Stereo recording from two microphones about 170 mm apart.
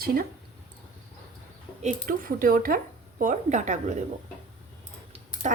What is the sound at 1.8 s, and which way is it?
A woman's voice, 55° right (ahead or behind).